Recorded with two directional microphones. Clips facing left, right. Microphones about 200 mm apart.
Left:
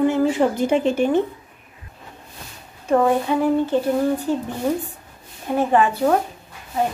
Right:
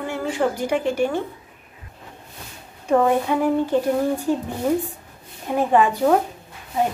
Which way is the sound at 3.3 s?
10° right (ahead or behind).